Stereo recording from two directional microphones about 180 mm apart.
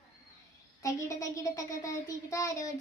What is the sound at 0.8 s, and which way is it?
Speech, 15° left (ahead or behind).